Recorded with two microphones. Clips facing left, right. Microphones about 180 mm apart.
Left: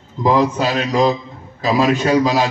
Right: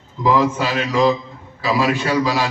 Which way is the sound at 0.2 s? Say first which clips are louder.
Left 2 dB; 40° left (ahead or behind).